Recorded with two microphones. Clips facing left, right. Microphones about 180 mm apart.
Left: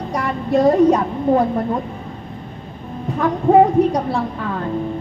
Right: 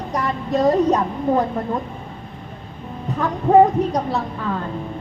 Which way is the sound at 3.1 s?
10° left (ahead or behind).